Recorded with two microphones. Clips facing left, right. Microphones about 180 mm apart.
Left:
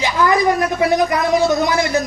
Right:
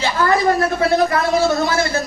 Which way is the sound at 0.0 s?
15° left (ahead or behind).